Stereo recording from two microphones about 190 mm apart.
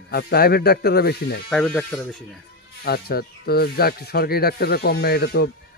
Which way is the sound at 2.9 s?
55° left (ahead or behind).